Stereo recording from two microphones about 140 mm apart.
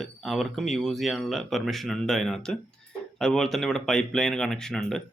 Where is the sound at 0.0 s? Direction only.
Centre (ahead or behind).